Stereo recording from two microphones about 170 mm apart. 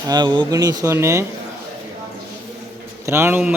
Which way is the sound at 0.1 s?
25° right (ahead or behind).